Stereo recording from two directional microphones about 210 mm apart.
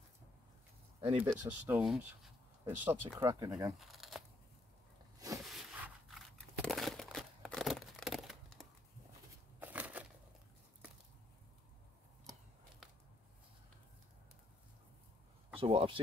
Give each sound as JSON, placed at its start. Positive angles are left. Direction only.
{"t": 1.0, "sound": "speech", "side_deg": -25}
{"t": 1.7, "sound": "speech", "side_deg": -5}
{"t": 3.5, "sound": "speech", "side_deg": -5}
{"t": 5.4, "sound": "crumpling", "side_deg": 0}
{"t": 9.6, "sound": "a sound", "side_deg": -5}
{"t": 15.5, "sound": "speech", "side_deg": -25}